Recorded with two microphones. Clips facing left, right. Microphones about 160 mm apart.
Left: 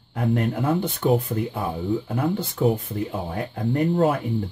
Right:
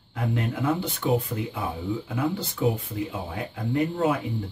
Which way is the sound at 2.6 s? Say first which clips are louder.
Left 3 dB; 45° left (ahead or behind).